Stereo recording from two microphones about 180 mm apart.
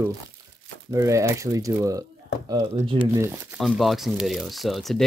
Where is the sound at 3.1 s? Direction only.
15° right (ahead or behind).